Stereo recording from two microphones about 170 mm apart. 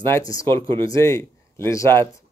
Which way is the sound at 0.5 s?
30° right (ahead or behind).